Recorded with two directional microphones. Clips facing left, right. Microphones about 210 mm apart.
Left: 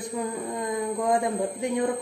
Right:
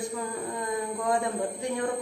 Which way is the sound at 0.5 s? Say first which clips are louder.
Left 4 dB; 20° left (ahead or behind).